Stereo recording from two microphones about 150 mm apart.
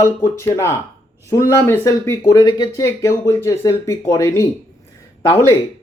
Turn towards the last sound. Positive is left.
turn(degrees=20)  # may be behind; listen again after turning